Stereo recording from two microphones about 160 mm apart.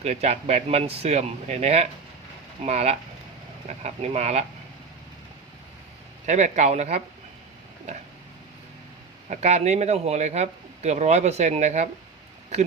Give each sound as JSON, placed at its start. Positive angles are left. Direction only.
{"t": 0.0, "sound": "speech", "side_deg": -40}
{"t": 6.2, "sound": "speech", "side_deg": -45}
{"t": 9.3, "sound": "speech", "side_deg": -45}